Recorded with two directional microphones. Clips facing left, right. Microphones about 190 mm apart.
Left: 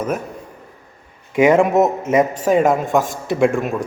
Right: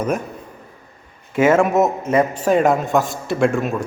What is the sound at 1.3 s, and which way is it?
Speech, 15° left (ahead or behind).